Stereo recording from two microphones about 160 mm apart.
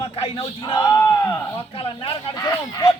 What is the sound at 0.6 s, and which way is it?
Speech, 25° left (ahead or behind).